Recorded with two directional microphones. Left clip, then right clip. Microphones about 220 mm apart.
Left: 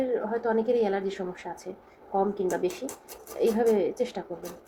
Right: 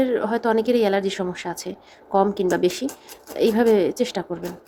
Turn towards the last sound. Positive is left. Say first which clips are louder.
# right 6 dB
turn(degrees=-35)  # may be behind; listen again after turning